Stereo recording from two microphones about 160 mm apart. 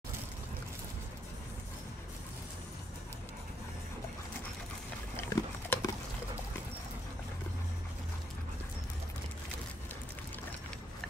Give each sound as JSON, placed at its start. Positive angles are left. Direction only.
{"t": 5.1, "sound": "pig", "side_deg": 20}